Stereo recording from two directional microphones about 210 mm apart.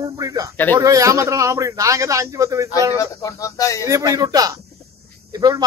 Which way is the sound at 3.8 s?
15° right (ahead or behind).